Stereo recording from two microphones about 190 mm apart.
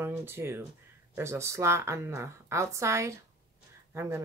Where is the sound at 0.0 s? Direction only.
10° right (ahead or behind).